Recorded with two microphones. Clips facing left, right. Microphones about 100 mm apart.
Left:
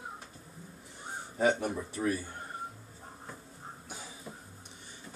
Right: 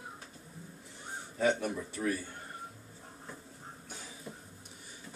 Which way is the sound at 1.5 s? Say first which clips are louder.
Left 2 dB; 20° left (ahead or behind).